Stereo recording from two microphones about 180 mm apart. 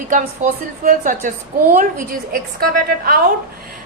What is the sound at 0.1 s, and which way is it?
A woman's voice, 45° right (ahead or behind).